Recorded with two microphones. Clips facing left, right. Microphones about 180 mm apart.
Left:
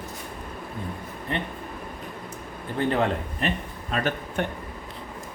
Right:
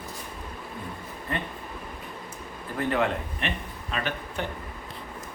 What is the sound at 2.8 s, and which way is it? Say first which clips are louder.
Speech: left 2 dB; 30° left (ahead or behind).